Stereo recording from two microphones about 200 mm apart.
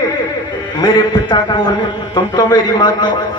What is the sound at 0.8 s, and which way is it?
A man's voice, 20° left (ahead or behind).